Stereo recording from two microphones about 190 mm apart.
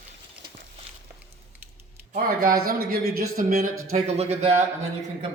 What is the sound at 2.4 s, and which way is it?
Speech, 50° right (ahead or behind).